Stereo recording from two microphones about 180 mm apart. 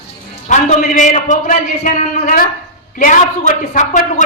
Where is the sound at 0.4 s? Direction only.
45° left (ahead or behind).